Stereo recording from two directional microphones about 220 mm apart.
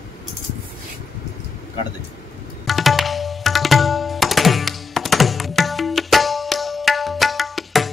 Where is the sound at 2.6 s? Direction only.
Centre (ahead or behind).